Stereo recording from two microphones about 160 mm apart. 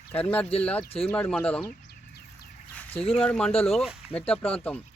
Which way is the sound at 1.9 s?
75° left (ahead or behind).